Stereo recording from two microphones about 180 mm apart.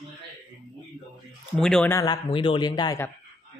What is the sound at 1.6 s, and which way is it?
Speech, 5° left (ahead or behind).